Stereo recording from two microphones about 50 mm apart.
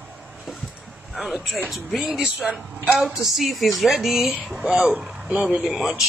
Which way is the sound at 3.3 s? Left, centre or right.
Centre.